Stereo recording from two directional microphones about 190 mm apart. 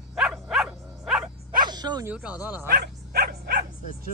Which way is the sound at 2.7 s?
55° right (ahead or behind).